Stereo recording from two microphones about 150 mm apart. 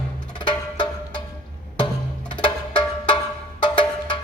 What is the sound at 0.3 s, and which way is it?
Music, 30° left (ahead or behind).